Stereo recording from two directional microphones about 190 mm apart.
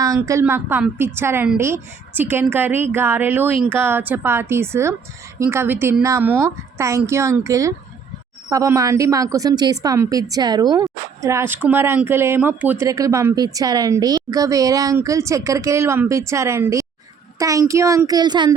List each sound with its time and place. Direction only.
0.0 s a woman's voice: 15° right (ahead or behind)